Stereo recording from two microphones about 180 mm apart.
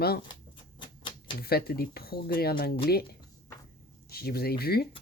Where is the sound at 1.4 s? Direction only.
60° left (ahead or behind).